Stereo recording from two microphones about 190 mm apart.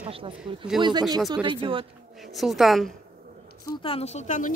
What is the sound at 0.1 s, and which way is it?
Speech, 30° right (ahead or behind).